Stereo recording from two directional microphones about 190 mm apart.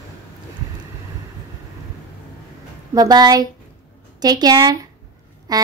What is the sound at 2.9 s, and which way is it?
A woman's voice, 20° right (ahead or behind).